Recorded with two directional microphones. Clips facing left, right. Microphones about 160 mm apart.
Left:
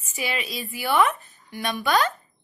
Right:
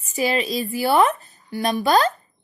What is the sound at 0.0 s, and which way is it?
A woman's voice, 40° right (ahead or behind).